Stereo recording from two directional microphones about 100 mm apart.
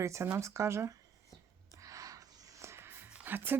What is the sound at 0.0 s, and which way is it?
Speech, 30° right (ahead or behind).